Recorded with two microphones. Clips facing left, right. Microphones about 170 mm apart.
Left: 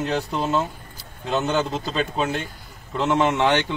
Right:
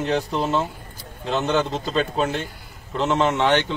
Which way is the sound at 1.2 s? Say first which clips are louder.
Right 1 dB; 10° left (ahead or behind).